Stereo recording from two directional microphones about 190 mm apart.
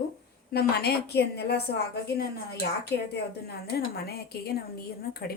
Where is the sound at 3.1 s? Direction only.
60° left (ahead or behind).